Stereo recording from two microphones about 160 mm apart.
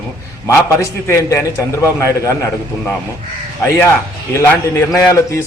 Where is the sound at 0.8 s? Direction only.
20° left (ahead or behind).